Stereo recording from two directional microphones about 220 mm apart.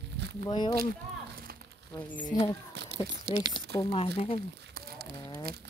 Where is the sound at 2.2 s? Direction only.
20° left (ahead or behind).